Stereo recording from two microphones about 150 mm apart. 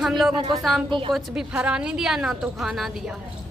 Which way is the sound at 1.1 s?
5° right (ahead or behind).